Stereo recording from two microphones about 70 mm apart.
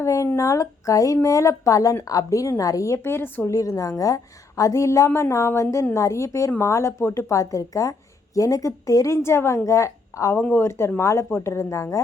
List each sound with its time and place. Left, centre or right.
0.0 s a sound: left
0.3 s a woman's voice: left
3.4 s a woman's voice: left
9.1 s a woman's voice: left